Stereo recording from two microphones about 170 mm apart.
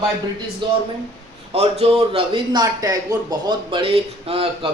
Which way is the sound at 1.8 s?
35° right (ahead or behind).